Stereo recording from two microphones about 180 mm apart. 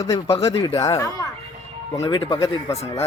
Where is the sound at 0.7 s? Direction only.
20° left (ahead or behind).